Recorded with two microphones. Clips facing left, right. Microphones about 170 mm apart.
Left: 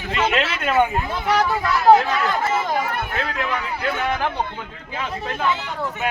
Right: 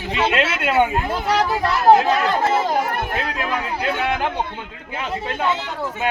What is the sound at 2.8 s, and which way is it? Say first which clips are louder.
Speech: right 2 dB; 50° right (ahead or behind).